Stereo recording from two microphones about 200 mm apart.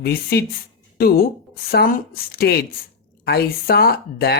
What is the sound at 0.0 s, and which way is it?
Speech, 50° left (ahead or behind).